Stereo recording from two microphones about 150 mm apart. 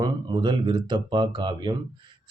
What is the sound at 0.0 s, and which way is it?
Speech, 30° right (ahead or behind).